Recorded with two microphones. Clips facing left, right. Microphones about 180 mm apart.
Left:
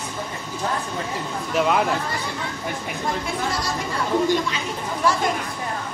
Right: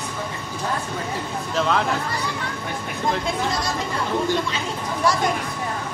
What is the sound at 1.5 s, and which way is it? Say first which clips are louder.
Speech: left 2 dB; 10° left (ahead or behind).